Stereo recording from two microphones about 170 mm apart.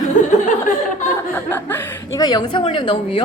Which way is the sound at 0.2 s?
50° left (ahead or behind).